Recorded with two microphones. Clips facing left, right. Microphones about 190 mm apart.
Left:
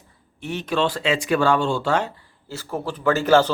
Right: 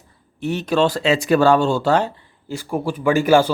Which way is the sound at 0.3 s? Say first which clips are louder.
Right 5 dB; 35° right (ahead or behind).